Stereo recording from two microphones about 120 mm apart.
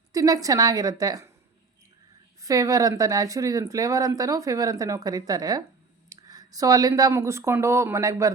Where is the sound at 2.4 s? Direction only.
30° right (ahead or behind).